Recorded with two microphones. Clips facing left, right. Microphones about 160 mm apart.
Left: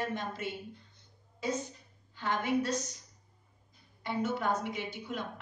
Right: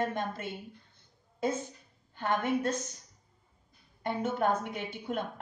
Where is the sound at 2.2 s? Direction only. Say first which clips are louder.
Right 1 dB; 55° right (ahead or behind).